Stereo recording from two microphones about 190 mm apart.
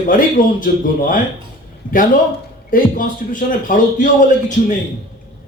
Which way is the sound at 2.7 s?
45° left (ahead or behind).